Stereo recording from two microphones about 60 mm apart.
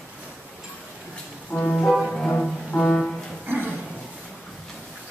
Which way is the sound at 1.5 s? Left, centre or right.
Left.